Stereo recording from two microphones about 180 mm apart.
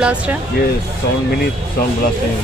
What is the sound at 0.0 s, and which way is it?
Speech, 5° right (ahead or behind).